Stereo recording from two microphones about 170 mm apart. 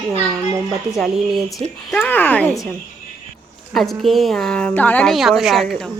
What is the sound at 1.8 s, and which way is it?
Speech, 5° left (ahead or behind).